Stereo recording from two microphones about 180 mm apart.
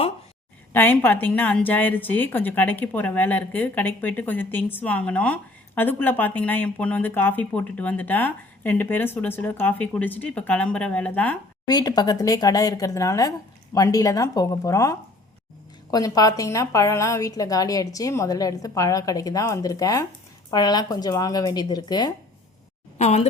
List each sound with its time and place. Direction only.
0.7 s a woman's voice: 10° left (ahead or behind)
11.6 s a woman's voice: 20° left (ahead or behind)
23.0 s speech: 35° left (ahead or behind)